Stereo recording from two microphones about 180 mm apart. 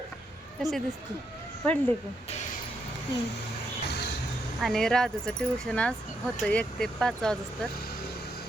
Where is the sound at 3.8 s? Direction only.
65° left (ahead or behind).